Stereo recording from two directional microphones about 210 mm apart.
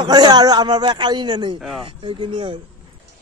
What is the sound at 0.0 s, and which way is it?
A man's voice, 20° right (ahead or behind).